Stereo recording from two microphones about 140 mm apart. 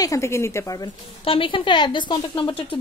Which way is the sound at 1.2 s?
40° left (ahead or behind).